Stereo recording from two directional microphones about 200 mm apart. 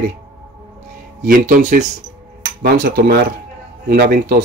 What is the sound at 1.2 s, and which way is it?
Speech, 40° right (ahead or behind).